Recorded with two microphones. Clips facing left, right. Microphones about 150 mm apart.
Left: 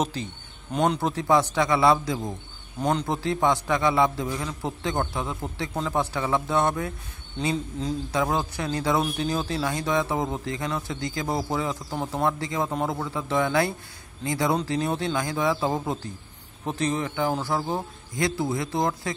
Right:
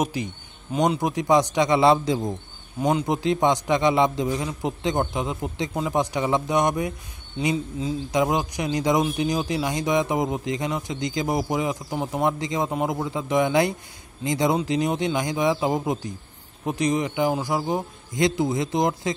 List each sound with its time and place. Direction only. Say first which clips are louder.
0.0 s a man's voice: right 2 dB; 15° right (ahead or behind)
2.8 s a man's voice: right 3 dB; 10° right (ahead or behind)
8.1 s a man's voice: right 4 dB; 15° right (ahead or behind)